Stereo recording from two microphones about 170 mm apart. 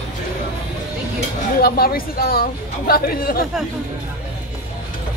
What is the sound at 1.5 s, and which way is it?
Speech, 65° left (ahead or behind).